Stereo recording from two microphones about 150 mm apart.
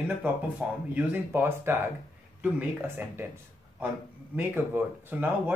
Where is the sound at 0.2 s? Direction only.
10° right (ahead or behind).